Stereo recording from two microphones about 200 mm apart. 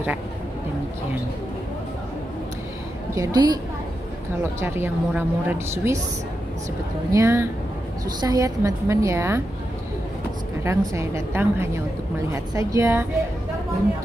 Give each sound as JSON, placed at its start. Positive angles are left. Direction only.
{"t": 3.2, "sound": "a woman's voice", "side_deg": -20}
{"t": 7.1, "sound": "a woman's voice", "side_deg": -15}
{"t": 10.6, "sound": "a woman's voice", "side_deg": -15}